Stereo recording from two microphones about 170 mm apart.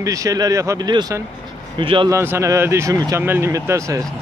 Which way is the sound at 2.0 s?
15° right (ahead or behind).